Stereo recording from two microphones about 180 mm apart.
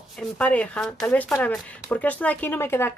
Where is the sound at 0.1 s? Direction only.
5° left (ahead or behind).